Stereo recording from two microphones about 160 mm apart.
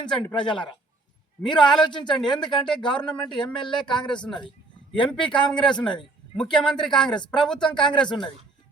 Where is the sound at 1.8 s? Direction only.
30° left (ahead or behind).